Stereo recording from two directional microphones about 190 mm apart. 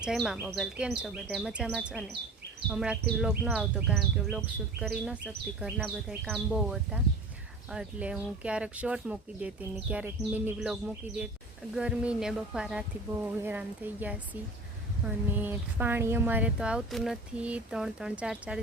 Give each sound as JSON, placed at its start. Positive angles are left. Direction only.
{"t": 0.0, "sound": "speech", "side_deg": -5}